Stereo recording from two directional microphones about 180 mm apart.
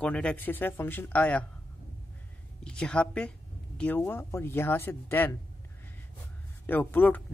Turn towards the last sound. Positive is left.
turn(degrees=10)  # may be behind; listen again after turning